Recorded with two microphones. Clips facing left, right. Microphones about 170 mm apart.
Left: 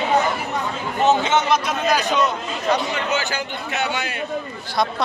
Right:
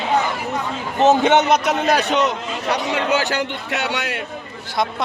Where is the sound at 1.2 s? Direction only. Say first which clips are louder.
Right 4 dB; 70° right (ahead or behind); by 4.1 s 85° right.